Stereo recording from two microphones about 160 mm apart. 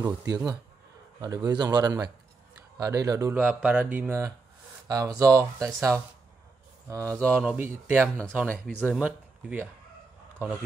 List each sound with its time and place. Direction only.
0.0 s speech: 25° right (ahead or behind)
4.8 s speech: 25° right (ahead or behind)